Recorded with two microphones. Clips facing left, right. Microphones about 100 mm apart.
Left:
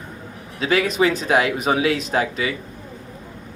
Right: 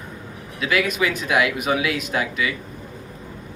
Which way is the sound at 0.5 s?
35° left (ahead or behind).